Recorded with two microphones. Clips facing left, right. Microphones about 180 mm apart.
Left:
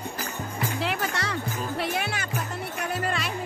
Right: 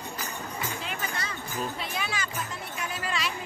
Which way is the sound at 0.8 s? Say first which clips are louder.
Left 6 dB; 75° left (ahead or behind).